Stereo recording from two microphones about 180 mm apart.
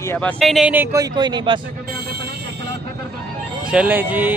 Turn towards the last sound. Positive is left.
turn(degrees=-10)  # may be behind; listen again after turning